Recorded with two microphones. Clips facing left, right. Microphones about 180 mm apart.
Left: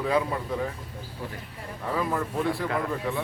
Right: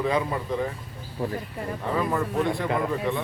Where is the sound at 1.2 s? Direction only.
50° right (ahead or behind).